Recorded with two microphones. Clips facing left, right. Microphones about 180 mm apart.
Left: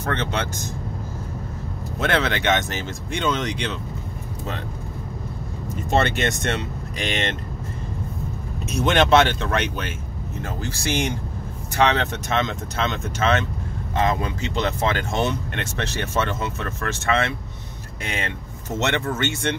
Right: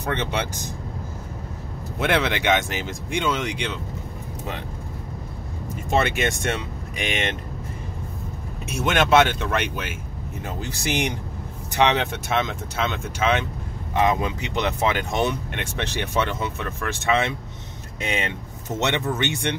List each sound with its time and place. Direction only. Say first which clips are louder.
0.0 s speech: even; 10° right (ahead or behind)
2.0 s speech: even; 15° right (ahead or behind)
5.9 s speech: left 1 dB; 10° right (ahead or behind)
8.6 s speech: left 2 dB; 5° right (ahead or behind)